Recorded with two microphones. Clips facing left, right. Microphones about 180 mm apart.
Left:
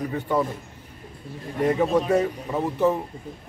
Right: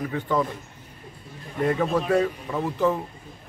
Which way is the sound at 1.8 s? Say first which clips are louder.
Left 1 dB; 25° left (ahead or behind).